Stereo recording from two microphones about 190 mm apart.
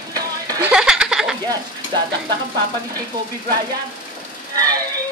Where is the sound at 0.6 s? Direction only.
5° right (ahead or behind).